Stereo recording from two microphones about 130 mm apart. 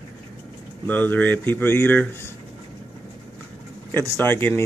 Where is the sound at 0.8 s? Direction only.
15° left (ahead or behind).